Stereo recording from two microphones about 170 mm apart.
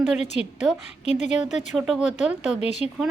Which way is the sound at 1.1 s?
45° left (ahead or behind).